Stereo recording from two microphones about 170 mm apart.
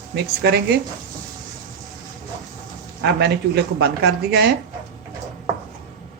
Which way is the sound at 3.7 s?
70° right (ahead or behind).